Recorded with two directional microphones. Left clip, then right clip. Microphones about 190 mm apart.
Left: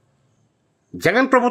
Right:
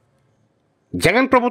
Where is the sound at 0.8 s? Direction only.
25° right (ahead or behind).